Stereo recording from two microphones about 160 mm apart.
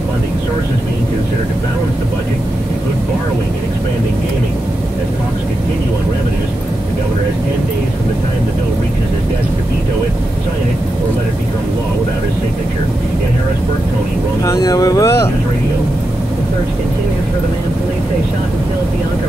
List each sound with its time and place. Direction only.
14.4 s speech: 20° left (ahead or behind)